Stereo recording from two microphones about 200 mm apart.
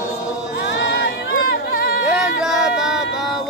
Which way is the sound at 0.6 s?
55° left (ahead or behind).